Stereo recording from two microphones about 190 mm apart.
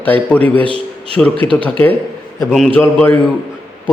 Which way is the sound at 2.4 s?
Centre (ahead or behind).